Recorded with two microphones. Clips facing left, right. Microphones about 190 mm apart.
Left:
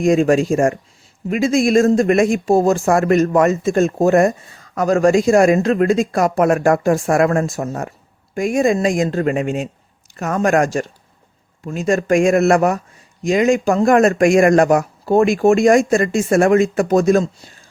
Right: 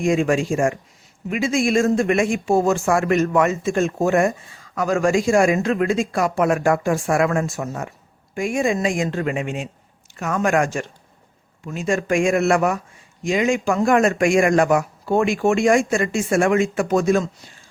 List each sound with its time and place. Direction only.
0.0 s speech: 40° left (ahead or behind)